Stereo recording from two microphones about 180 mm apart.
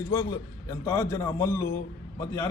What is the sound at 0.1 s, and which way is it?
A man's voice, 15° left (ahead or behind).